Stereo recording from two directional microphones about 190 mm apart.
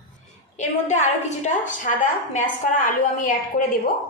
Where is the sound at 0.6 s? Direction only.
40° left (ahead or behind).